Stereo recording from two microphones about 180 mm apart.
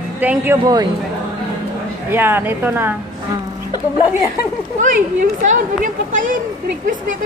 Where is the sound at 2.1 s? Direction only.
10° right (ahead or behind).